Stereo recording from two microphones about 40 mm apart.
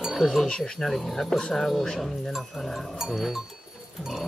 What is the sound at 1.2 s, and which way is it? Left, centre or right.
Speech, left.